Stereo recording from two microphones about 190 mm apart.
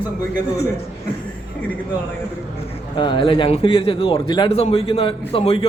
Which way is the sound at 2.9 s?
25° left (ahead or behind).